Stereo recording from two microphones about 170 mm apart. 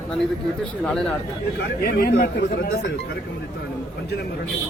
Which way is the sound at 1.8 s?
65° left (ahead or behind).